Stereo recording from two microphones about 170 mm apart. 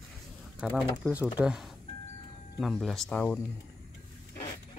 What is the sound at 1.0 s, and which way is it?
Speech, 15° right (ahead or behind).